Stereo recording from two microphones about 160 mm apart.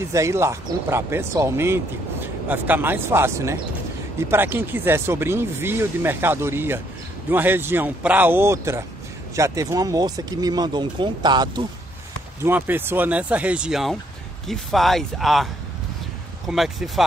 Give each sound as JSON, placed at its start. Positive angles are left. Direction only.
{"t": 0.0, "sound": "speech", "side_deg": -20}
{"t": 12.4, "sound": "speech", "side_deg": -10}